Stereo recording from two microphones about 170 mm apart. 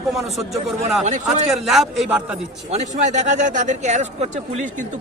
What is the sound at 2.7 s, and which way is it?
Speech, 45° right (ahead or behind).